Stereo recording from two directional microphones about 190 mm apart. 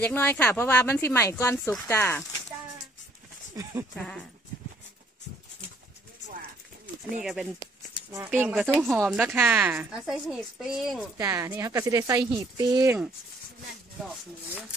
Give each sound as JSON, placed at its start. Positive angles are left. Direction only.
{"t": 0.0, "sound": "speech", "side_deg": 10}
{"t": 3.6, "sound": "speech", "side_deg": -15}
{"t": 3.9, "sound": "a woman's voice", "side_deg": 5}
{"t": 7.2, "sound": "a woman's voice", "side_deg": 0}
{"t": 8.1, "sound": "a woman's voice", "side_deg": -10}
{"t": 11.1, "sound": "speech", "side_deg": -15}